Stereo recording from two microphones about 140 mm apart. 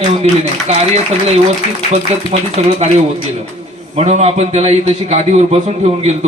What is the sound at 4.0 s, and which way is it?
A man's voice, 50° right (ahead or behind).